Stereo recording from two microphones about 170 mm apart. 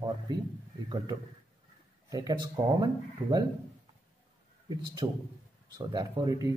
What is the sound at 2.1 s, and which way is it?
Speech, 25° right (ahead or behind).